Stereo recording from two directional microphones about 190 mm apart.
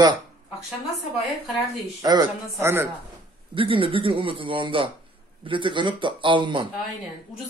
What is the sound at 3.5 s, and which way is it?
A man's voice, 25° right (ahead or behind).